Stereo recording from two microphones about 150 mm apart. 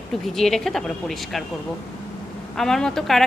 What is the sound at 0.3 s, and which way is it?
A woman's voice, centre (ahead or behind).